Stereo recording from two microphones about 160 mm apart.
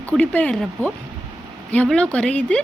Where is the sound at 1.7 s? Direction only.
5° left (ahead or behind).